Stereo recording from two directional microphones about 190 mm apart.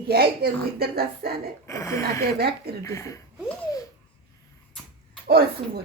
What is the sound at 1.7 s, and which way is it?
Speech, 15° left (ahead or behind).